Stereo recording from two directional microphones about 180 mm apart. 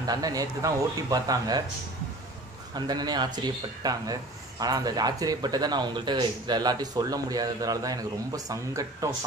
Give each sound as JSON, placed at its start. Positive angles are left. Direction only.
{"t": 0.0, "sound": "speech", "side_deg": -20}
{"t": 2.7, "sound": "speech", "side_deg": -20}